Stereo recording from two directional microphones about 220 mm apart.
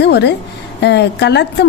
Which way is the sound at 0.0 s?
50° left (ahead or behind).